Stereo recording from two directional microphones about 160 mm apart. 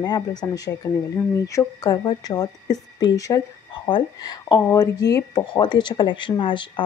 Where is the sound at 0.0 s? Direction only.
25° left (ahead or behind).